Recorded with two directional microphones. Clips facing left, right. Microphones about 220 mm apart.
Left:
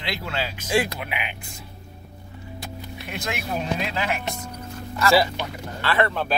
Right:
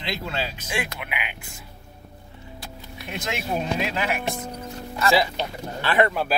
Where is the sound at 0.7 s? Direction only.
35° left (ahead or behind).